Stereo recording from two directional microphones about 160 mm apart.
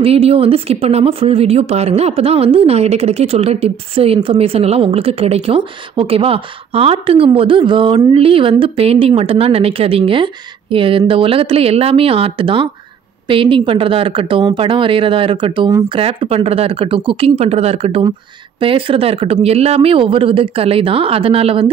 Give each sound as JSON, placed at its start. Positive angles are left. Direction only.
{"t": 0.0, "sound": "a woman's voice", "side_deg": -40}